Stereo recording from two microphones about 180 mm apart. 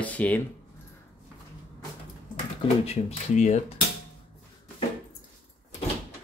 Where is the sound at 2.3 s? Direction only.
35° left (ahead or behind).